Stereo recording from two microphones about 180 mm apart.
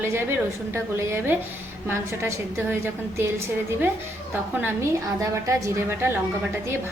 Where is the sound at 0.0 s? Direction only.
15° right (ahead or behind).